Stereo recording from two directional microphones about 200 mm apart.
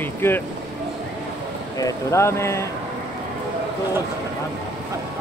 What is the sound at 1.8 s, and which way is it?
Speech, 15° left (ahead or behind).